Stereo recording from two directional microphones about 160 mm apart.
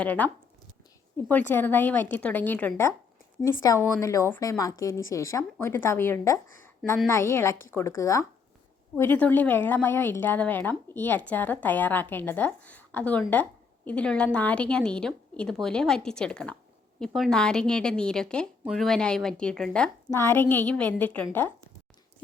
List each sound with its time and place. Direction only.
0.0 s a woman's voice: 10° left (ahead or behind)
20.1 s speech: 15° left (ahead or behind)